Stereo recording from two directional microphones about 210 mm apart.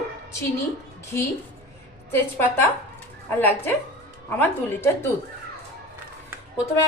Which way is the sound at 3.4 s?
10° left (ahead or behind).